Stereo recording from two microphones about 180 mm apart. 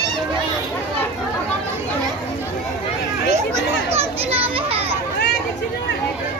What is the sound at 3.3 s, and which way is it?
Children playing, 15° right (ahead or behind).